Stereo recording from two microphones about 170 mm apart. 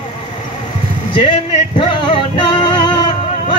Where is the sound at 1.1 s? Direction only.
30° left (ahead or behind).